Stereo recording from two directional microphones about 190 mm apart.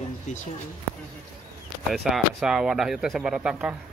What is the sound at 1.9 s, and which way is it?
A man's voice, centre (ahead or behind).